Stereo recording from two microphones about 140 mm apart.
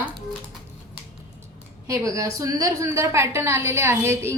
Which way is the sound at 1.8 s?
20° right (ahead or behind).